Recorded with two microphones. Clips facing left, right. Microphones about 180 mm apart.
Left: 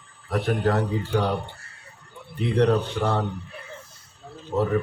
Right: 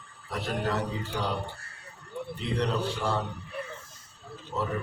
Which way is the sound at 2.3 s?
55° left (ahead or behind).